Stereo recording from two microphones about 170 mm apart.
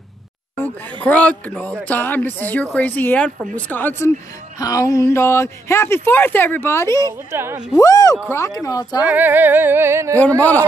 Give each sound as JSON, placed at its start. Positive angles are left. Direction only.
{"t": 1.0, "sound": "speech", "side_deg": 5}
{"t": 7.0, "sound": "music", "side_deg": -15}
{"t": 7.7, "sound": "speech", "side_deg": 20}
{"t": 9.0, "sound": "music", "side_deg": -10}